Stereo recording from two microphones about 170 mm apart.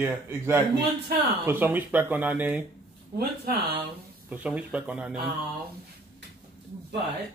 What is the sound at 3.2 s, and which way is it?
Speech, 65° right (ahead or behind).